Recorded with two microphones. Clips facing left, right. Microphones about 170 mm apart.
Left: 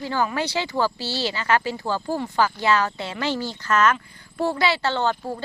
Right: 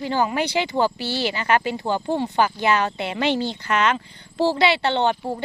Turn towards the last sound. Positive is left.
turn(degrees=-20)  # may be behind; listen again after turning